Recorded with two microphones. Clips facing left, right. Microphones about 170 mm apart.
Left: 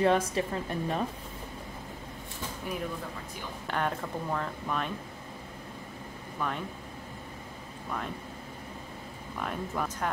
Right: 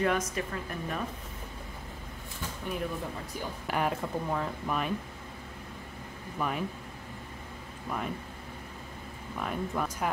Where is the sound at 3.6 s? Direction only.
10° right (ahead or behind).